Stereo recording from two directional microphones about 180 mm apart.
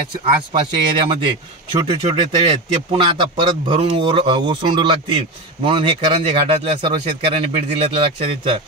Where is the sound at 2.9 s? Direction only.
30° right (ahead or behind).